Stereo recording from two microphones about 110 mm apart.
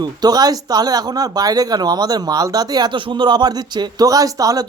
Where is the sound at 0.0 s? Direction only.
40° right (ahead or behind).